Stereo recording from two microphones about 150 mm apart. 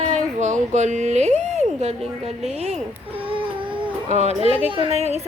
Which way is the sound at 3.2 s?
35° right (ahead or behind).